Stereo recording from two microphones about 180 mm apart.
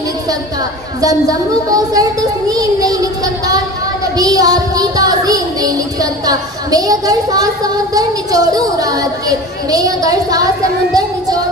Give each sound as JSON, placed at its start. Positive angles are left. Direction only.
{"t": 1.0, "sound": "child singing", "side_deg": -20}